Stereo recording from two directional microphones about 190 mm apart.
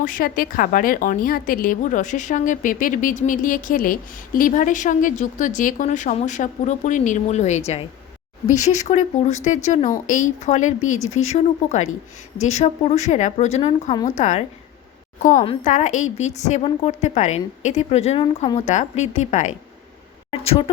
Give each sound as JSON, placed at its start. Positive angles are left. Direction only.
{"t": 0.0, "sound": "a woman's voice", "side_deg": 45}
{"t": 14.2, "sound": "a woman's voice", "side_deg": 40}